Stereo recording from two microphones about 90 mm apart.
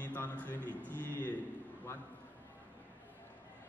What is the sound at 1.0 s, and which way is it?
Speech, 20° left (ahead or behind).